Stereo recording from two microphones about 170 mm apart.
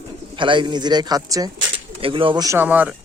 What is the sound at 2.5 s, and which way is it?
Speech, 10° right (ahead or behind).